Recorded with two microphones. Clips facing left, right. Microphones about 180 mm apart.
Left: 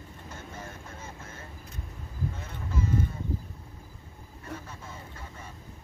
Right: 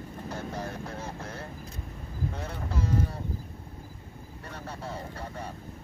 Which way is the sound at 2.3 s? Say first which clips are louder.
Right 2 dB; 35° right (ahead or behind).